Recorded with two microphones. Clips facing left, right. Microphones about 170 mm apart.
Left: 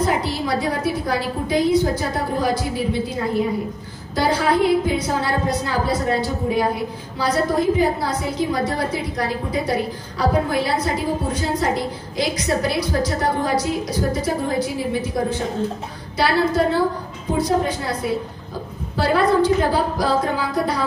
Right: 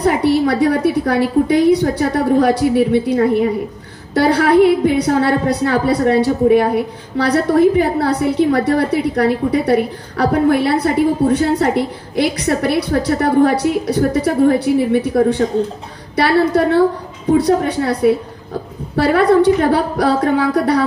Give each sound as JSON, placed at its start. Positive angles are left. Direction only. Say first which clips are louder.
{"t": 0.0, "sound": "a woman's voice", "louder": "right 8 dB", "side_deg": -65}